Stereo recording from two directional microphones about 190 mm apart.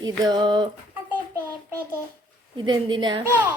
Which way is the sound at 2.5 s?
25° right (ahead or behind).